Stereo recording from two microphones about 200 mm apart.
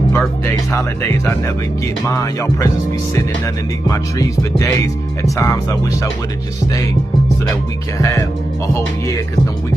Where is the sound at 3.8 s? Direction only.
15° left (ahead or behind).